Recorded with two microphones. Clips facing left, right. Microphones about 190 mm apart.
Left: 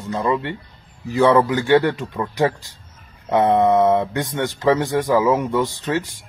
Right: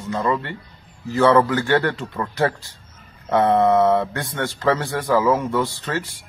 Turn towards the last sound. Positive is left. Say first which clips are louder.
# left 4 dB
turn(degrees=15)  # may be behind; listen again after turning